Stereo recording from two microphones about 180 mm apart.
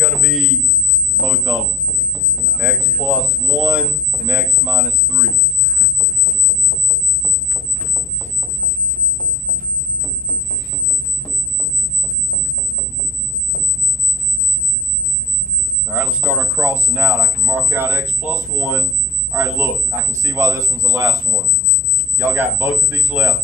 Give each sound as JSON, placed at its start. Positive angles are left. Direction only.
{"t": 0.0, "sound": "speech", "side_deg": 0}
{"t": 2.6, "sound": "speech", "side_deg": -5}
{"t": 15.9, "sound": "speech", "side_deg": -5}
{"t": 22.2, "sound": "speech", "side_deg": -10}